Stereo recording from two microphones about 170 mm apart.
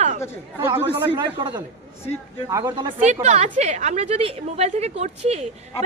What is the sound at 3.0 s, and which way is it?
A woman's voice, 45° right (ahead or behind).